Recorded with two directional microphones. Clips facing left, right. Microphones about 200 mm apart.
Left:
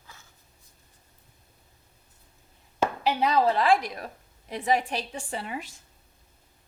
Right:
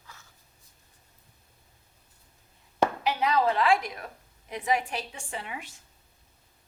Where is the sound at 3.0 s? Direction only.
30° left (ahead or behind).